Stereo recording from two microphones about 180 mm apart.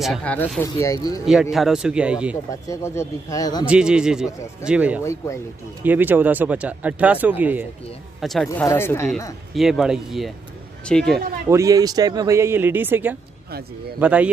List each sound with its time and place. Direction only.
0.0 s speech: 5° left (ahead or behind)
1.2 s speech: 5° right (ahead or behind)
2.7 s speech: 15° left (ahead or behind)
3.6 s speech: 5° right (ahead or behind)
8.2 s speech: centre (ahead or behind)
8.5 s speech: 15° left (ahead or behind)
11.4 s speech: 15° right (ahead or behind)